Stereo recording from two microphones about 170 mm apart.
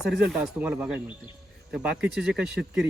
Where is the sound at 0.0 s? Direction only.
Centre (ahead or behind).